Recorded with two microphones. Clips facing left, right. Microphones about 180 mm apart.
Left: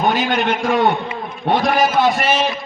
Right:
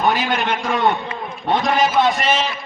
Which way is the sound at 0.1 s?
Centre (ahead or behind).